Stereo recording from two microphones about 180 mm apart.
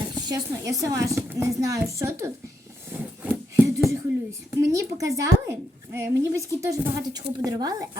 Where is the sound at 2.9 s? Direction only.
10° right (ahead or behind).